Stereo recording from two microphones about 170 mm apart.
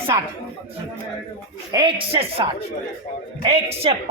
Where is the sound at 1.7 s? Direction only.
30° right (ahead or behind).